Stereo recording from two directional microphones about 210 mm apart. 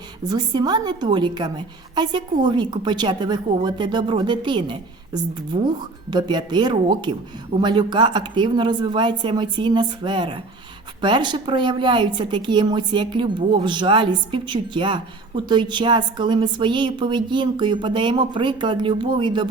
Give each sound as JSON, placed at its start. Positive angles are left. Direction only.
{"t": 0.3, "sound": "a woman's voice", "side_deg": -20}